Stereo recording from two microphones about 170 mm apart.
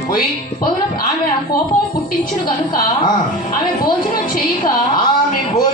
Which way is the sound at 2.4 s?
25° left (ahead or behind).